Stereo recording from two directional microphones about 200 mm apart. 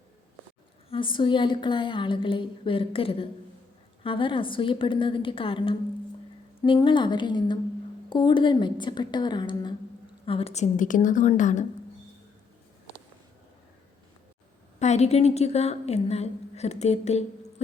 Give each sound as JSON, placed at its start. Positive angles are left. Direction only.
{"t": 0.9, "sound": "a woman's voice", "side_deg": 25}
{"t": 14.8, "sound": "a woman's voice", "side_deg": 35}